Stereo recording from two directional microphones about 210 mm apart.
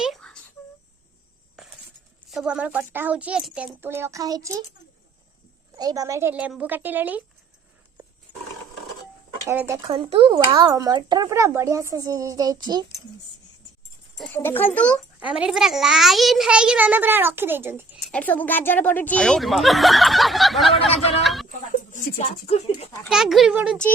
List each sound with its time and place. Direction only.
0.0 s a sound: centre (ahead or behind)
1.6 s a sound: centre (ahead or behind)
2.3 s speech: 5° right (ahead or behind)
5.7 s speech: 15° right (ahead or behind)
9.5 s speech: 10° right (ahead or behind)
9.9 s speech: 25° right (ahead or behind)
14.2 s speech: 10° left (ahead or behind)
15.2 s a child's voice: 5° right (ahead or behind)
18.1 s a child's voice: 5° left (ahead or behind)
20.7 s speech: 25° left (ahead or behind)
23.0 s a child's voice: centre (ahead or behind)